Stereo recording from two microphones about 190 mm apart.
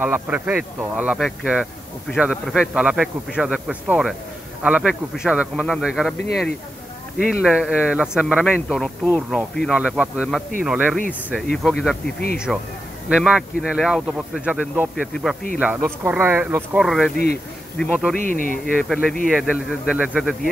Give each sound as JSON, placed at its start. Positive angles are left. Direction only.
{"t": 0.0, "sound": "speech", "side_deg": -5}
{"t": 7.2, "sound": "speech", "side_deg": -5}
{"t": 18.1, "sound": "speech", "side_deg": 45}
{"t": 18.8, "sound": "speech", "side_deg": 5}